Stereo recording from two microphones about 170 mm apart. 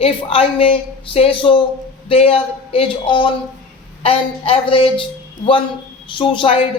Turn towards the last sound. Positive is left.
turn(degrees=30)  # may be behind; listen again after turning